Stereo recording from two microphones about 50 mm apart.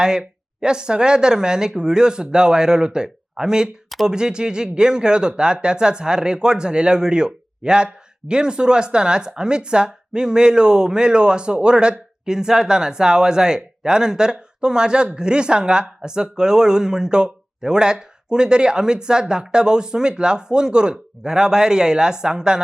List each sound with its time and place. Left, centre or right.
0.0 s speech: centre